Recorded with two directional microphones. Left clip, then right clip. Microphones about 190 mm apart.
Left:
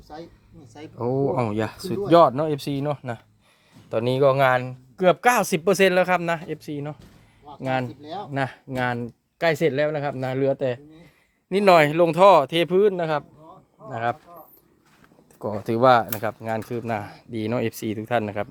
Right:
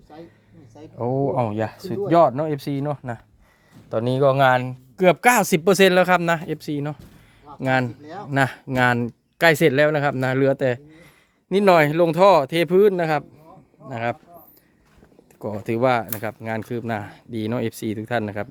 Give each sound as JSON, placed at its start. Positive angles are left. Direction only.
{"t": 0.1, "sound": "speech", "side_deg": 30}
{"t": 0.9, "sound": "speech", "side_deg": -10}
{"t": 8.0, "sound": "speech", "side_deg": 0}
{"t": 8.3, "sound": "speech", "side_deg": -35}
{"t": 11.4, "sound": "speech", "side_deg": -15}
{"t": 13.9, "sound": "speech", "side_deg": -15}
{"t": 15.4, "sound": "speech", "side_deg": 0}